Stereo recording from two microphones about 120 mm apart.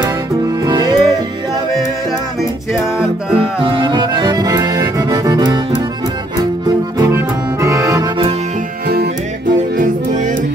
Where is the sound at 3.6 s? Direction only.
45° right (ahead or behind).